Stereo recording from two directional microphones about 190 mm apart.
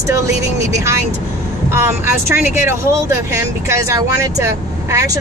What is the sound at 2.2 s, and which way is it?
Speech, 10° right (ahead or behind).